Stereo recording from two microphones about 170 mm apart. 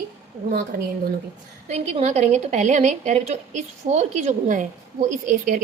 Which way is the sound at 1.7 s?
40° right (ahead or behind).